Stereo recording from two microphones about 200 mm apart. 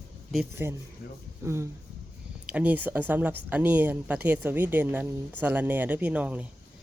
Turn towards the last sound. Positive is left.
turn(degrees=-5)  # may be behind; listen again after turning